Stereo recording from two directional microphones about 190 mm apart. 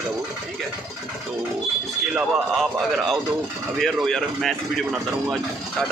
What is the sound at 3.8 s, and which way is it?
Speech, centre (ahead or behind).